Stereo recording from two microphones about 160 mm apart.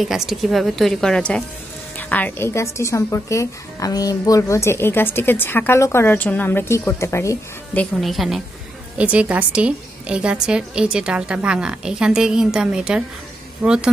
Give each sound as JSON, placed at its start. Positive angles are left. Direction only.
{"t": 0.0, "sound": "a woman's voice", "side_deg": 0}